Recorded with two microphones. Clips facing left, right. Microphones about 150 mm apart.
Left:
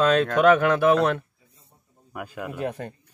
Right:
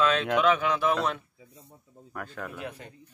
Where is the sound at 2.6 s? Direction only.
50° left (ahead or behind).